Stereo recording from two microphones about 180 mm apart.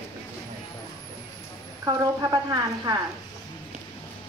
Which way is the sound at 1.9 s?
20° right (ahead or behind).